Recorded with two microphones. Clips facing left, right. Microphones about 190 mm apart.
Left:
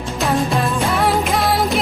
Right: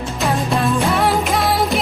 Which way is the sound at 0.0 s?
Centre (ahead or behind).